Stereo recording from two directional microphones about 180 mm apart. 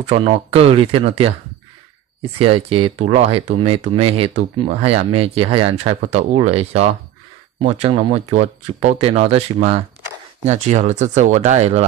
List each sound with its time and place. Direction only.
0.0 s speech: 30° right (ahead or behind)
2.3 s speech: 30° right (ahead or behind)